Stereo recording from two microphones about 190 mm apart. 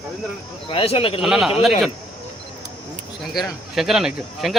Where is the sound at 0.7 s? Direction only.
30° left (ahead or behind).